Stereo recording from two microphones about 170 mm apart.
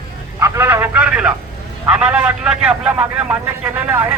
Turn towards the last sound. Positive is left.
turn(degrees=-10)  # may be behind; listen again after turning